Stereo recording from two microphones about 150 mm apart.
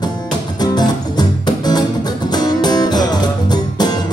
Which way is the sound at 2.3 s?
25° left (ahead or behind).